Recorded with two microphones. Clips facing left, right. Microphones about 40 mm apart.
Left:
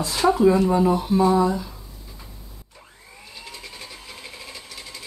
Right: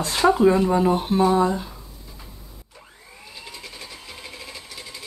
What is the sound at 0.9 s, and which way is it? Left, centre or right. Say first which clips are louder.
Speech: even; right.